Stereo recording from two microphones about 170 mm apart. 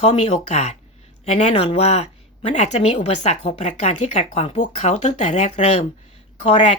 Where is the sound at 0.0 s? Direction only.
40° left (ahead or behind).